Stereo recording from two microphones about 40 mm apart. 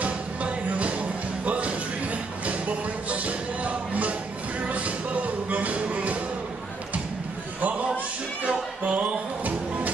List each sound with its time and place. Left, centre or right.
0.0 s music: right
7.6 s a sound: right
8.5 s music: right